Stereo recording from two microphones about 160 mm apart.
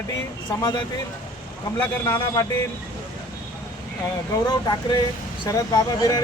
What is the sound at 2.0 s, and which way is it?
Speech, 20° left (ahead or behind).